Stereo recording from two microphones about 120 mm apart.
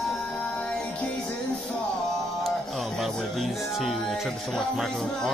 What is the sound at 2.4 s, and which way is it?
Music, centre (ahead or behind).